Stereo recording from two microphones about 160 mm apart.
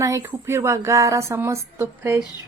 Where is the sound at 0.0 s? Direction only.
20° right (ahead or behind).